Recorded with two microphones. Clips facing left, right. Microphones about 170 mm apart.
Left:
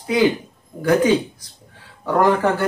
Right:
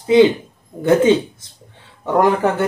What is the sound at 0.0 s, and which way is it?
Speech, 25° right (ahead or behind).